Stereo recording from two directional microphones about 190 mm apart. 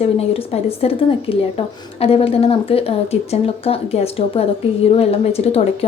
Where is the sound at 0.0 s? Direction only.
35° left (ahead or behind).